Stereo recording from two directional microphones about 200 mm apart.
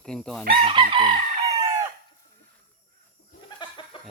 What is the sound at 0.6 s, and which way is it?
Chicken, 25° right (ahead or behind).